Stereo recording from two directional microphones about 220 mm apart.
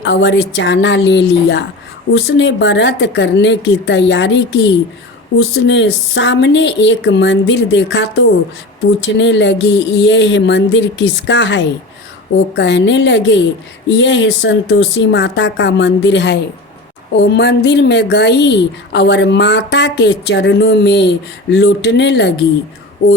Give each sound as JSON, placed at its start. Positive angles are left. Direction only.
{"t": 0.0, "sound": "a woman's voice", "side_deg": 55}